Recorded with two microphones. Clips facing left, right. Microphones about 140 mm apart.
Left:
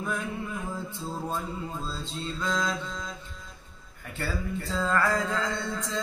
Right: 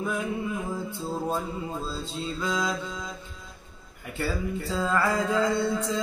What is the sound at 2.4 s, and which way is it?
Mantra, 10° right (ahead or behind).